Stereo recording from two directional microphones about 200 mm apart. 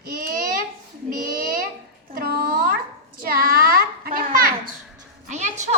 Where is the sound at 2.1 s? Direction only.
50° right (ahead or behind).